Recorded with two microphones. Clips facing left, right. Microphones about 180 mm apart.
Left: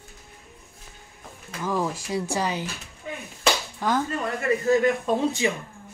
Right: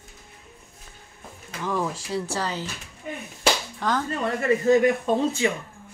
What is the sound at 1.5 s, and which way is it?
Speech, 10° left (ahead or behind).